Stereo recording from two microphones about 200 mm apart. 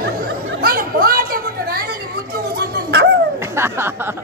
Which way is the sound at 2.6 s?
55° right (ahead or behind).